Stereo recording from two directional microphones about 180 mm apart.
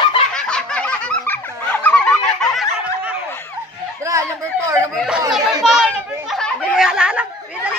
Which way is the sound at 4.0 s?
15° right (ahead or behind).